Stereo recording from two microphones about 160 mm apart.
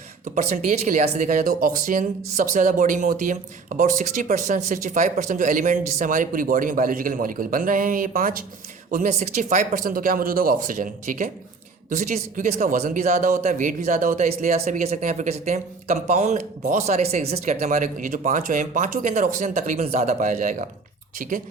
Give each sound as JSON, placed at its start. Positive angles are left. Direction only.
{"t": 0.3, "sound": "a man's voice", "side_deg": -45}
{"t": 8.9, "sound": "a man's voice", "side_deg": -50}